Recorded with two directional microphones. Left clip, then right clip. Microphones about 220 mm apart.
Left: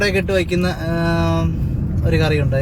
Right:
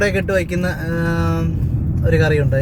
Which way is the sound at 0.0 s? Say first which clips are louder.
Even; 10° right (ahead or behind).